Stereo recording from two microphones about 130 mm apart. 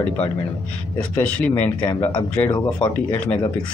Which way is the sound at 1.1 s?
15° left (ahead or behind).